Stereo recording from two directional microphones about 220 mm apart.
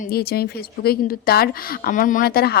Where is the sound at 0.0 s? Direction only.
45° left (ahead or behind).